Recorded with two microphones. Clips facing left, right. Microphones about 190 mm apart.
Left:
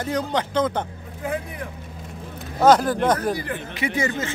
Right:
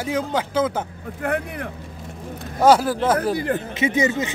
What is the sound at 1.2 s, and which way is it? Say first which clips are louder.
Speech: right 3 dB; 65° right (ahead or behind).